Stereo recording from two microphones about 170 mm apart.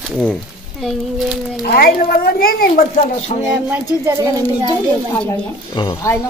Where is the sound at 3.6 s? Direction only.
15° right (ahead or behind).